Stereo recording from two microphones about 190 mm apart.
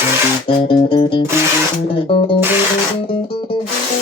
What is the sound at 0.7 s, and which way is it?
Music, 25° left (ahead or behind).